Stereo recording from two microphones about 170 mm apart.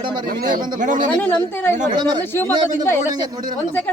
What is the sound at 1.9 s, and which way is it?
Speech, 25° right (ahead or behind).